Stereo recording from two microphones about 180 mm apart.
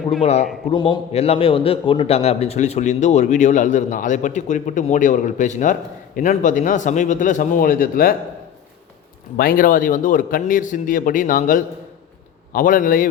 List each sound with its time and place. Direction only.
0.2 s a man's voice: 35° left (ahead or behind); by 8.1 s 50° left (ahead or behind)
9.4 s a man's voice: 50° left (ahead or behind)